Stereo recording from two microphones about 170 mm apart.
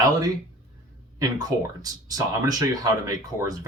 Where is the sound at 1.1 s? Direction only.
20° right (ahead or behind).